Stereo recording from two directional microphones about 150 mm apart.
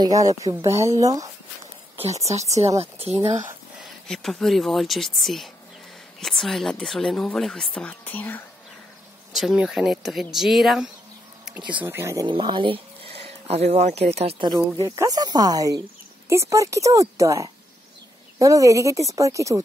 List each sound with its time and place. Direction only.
0.0 s speech: 25° right (ahead or behind)
2.8 s speech: 40° right (ahead or behind)
4.1 s speech: centre (ahead or behind)
9.3 s speech: 5° right (ahead or behind)
11.8 s speech: 15° right (ahead or behind)
12.3 s speech: 35° right (ahead or behind)
14.4 s speech: 25° right (ahead or behind)